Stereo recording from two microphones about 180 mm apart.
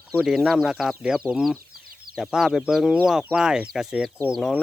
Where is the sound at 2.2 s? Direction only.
Centre (ahead or behind).